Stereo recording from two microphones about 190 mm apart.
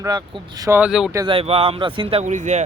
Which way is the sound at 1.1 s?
25° right (ahead or behind).